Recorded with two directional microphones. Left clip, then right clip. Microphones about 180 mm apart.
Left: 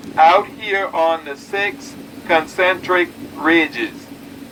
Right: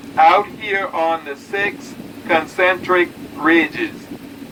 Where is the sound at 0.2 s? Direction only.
15° left (ahead or behind).